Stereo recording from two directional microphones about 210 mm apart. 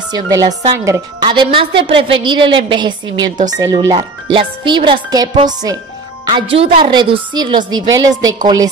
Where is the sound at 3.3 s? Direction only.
35° right (ahead or behind).